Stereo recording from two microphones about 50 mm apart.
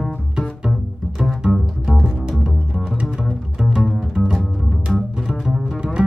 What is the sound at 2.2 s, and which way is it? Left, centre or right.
Double bass, centre.